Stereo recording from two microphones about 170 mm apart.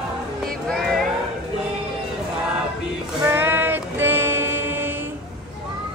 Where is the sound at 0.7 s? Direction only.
Centre (ahead or behind).